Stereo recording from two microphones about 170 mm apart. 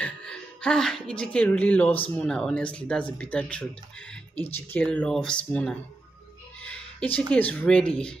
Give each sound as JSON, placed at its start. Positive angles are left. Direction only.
{"t": 0.0, "sound": "speech", "side_deg": 5}
{"t": 6.6, "sound": "a sound", "side_deg": 10}
{"t": 7.3, "sound": "speech", "side_deg": 10}